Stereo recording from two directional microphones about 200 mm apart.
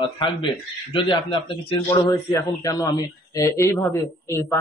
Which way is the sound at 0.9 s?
25° left (ahead or behind).